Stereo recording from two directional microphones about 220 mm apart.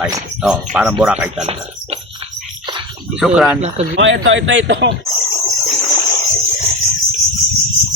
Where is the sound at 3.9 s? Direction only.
55° right (ahead or behind).